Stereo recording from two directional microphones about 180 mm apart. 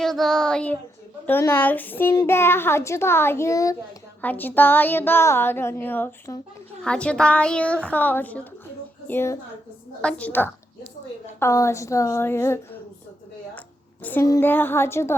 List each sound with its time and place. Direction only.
0.0 s child singing: centre (ahead or behind)
1.3 s a woman's voice: 10° left (ahead or behind)
14.0 s a woman's voice: 15° left (ahead or behind)